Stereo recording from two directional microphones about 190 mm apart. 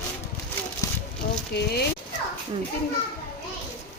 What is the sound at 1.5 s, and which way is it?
Speech, 55° left (ahead or behind).